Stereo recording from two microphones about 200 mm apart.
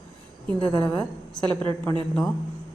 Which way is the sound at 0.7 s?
10° left (ahead or behind).